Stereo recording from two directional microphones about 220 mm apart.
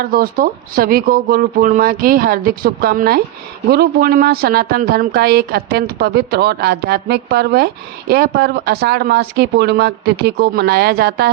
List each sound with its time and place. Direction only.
0.0 s speech: 40° right (ahead or behind)